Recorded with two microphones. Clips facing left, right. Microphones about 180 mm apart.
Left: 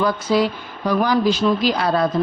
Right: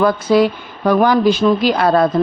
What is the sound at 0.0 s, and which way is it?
Speech, 55° right (ahead or behind).